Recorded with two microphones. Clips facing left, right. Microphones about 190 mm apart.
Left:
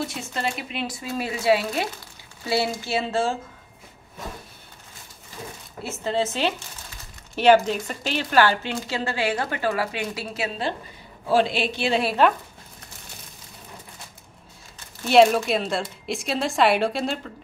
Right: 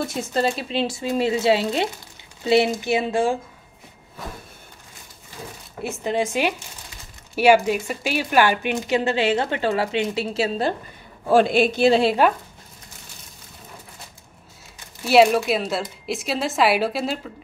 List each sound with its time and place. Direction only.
0.3 s speech: 35° right (ahead or behind); by 3.3 s 15° right (ahead or behind)
6.0 s speech: 15° right (ahead or behind)
11.2 s a man's voice: 50° right (ahead or behind)
12.2 s speech: 10° right (ahead or behind)
15.0 s a woman's voice: 5° right (ahead or behind)